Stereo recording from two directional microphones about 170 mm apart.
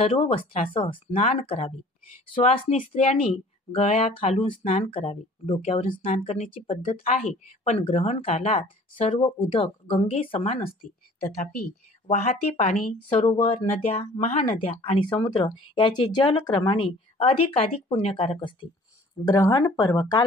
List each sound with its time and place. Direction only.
0.0 s speech: 35° left (ahead or behind)
1.1 s speech: 45° left (ahead or behind)
12.1 s speech: 40° left (ahead or behind)
19.2 s speech: 20° left (ahead or behind)